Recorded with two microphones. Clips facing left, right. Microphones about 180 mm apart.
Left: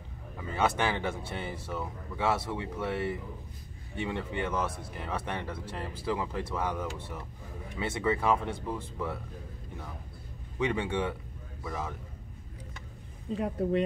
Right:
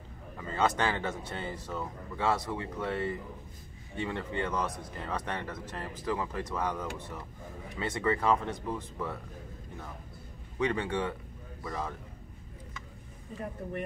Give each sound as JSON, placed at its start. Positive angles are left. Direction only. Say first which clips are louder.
{"t": 0.4, "sound": "speech", "louder": "even", "side_deg": 10}
{"t": 10.6, "sound": "a man's voice", "louder": "left 1 dB", "side_deg": 10}
{"t": 13.4, "sound": "speech", "louder": "left 9 dB", "side_deg": 85}